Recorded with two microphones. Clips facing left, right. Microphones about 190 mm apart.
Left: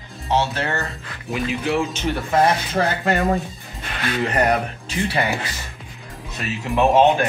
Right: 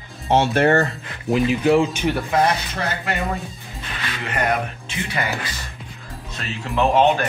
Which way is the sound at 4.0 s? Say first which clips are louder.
Left 5 dB; 40° left (ahead or behind).